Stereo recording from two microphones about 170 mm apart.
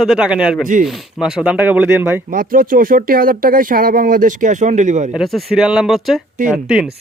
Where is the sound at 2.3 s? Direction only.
55° right (ahead or behind).